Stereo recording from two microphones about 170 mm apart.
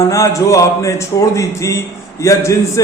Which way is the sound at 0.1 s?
20° left (ahead or behind).